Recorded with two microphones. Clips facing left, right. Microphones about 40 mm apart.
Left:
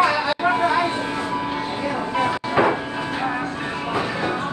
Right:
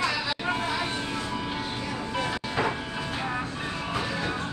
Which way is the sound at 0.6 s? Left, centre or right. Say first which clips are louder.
Left 10 dB; left.